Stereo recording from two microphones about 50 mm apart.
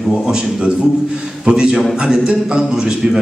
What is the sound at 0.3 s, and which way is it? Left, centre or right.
A man's voice, centre.